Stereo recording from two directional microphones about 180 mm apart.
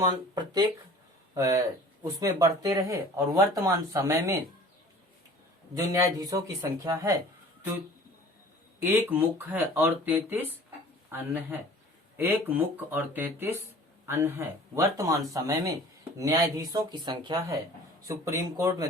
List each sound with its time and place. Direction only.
0.0 s speech: 25° right (ahead or behind)
5.7 s speech: 15° right (ahead or behind)
8.8 s speech: 10° right (ahead or behind)